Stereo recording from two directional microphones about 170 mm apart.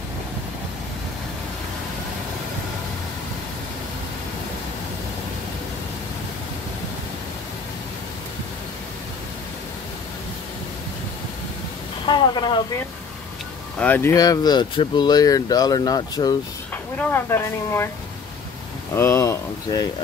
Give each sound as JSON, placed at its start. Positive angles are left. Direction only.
{"t": 12.1, "sound": "speech", "side_deg": 25}
{"t": 13.7, "sound": "speech", "side_deg": 10}
{"t": 16.7, "sound": "speech", "side_deg": 10}
{"t": 18.9, "sound": "speech", "side_deg": 15}